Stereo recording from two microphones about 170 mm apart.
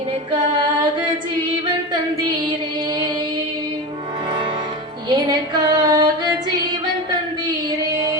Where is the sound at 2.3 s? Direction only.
25° right (ahead or behind).